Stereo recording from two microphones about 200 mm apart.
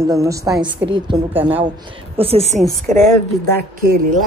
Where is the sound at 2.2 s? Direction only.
30° right (ahead or behind).